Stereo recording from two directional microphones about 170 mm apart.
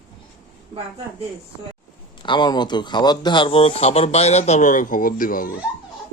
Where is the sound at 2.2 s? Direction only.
25° left (ahead or behind); by 5.5 s 55° left (ahead or behind).